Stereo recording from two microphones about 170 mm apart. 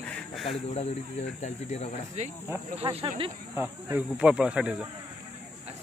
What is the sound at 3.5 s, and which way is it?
Speech, 10° right (ahead or behind).